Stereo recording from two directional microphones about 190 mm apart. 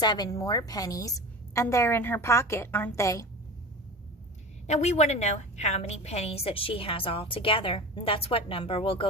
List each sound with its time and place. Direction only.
0.0 s a woman's voice: 20° left (ahead or behind)
4.6 s a woman's voice: 35° left (ahead or behind)